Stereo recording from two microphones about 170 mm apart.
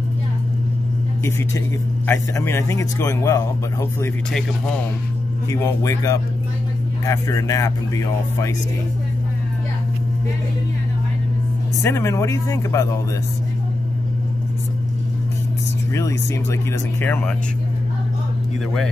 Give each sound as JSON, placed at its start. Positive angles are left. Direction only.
{"t": 2.0, "sound": "speech", "side_deg": 15}
{"t": 5.5, "sound": "speech", "side_deg": 15}
{"t": 11.8, "sound": "speech", "side_deg": 15}
{"t": 15.9, "sound": "speech", "side_deg": 15}